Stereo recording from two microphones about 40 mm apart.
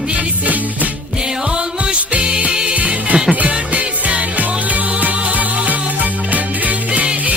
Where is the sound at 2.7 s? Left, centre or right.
Right.